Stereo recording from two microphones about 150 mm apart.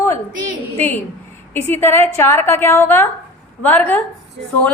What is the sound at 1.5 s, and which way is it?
A woman's voice, 15° left (ahead or behind).